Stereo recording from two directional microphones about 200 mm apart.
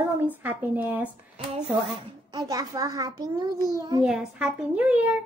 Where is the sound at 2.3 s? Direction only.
20° right (ahead or behind).